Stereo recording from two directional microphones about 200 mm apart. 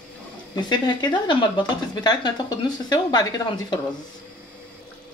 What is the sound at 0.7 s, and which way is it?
Speech, 20° left (ahead or behind).